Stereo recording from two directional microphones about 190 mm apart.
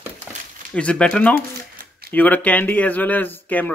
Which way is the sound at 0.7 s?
5° left (ahead or behind).